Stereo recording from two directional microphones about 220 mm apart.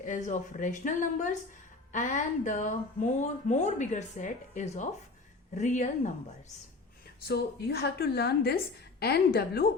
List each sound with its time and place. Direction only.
0.0 s speech: 35° left (ahead or behind)
7.3 s a woman's voice: 45° left (ahead or behind)